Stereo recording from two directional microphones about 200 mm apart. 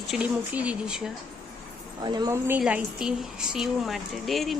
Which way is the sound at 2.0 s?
20° right (ahead or behind).